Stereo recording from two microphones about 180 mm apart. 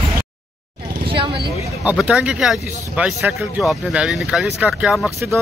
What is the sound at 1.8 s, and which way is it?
Speech, 5° right (ahead or behind).